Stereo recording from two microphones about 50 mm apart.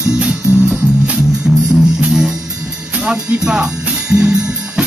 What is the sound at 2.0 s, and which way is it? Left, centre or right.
Music, centre.